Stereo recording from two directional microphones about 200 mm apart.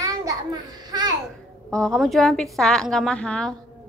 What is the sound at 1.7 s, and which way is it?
A woman's voice, 5° left (ahead or behind).